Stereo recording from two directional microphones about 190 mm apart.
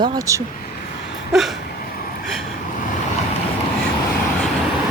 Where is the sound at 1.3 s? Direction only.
Centre (ahead or behind).